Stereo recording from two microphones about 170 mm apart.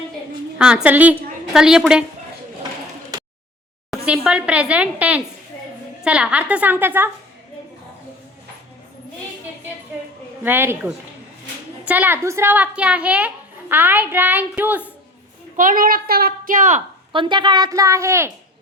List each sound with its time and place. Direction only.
0.6 s a woman's voice: 5° right (ahead or behind)
3.1 s a sound: 20° right (ahead or behind)
3.9 s a woman's voice: 5° right (ahead or behind)
10.4 s a woman's voice: 10° right (ahead or behind)
15.5 s a woman's voice: 50° right (ahead or behind)
17.1 s a woman's voice: 30° right (ahead or behind)